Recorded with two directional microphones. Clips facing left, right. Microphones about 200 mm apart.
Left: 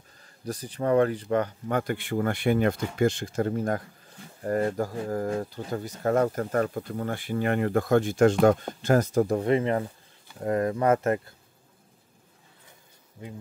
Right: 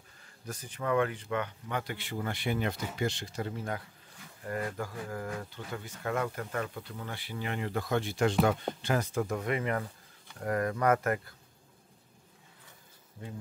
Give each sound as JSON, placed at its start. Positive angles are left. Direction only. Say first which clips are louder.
{"t": 0.5, "sound": "speech", "louder": "left 7 dB", "side_deg": 35}